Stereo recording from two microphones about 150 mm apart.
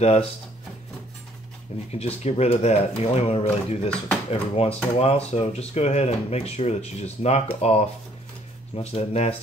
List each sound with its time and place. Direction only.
1.9 s speech: 45° left (ahead or behind)